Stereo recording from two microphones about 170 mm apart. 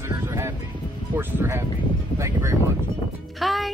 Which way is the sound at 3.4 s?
Centre (ahead or behind).